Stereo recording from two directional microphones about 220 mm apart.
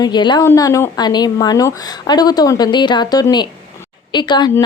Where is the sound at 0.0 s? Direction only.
20° left (ahead or behind).